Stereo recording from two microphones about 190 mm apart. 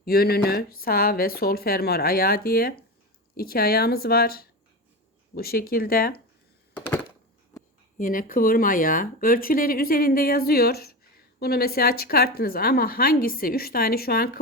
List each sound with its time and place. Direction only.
0.0 s speech: 55° left (ahead or behind)
7.9 s speech: 45° left (ahead or behind)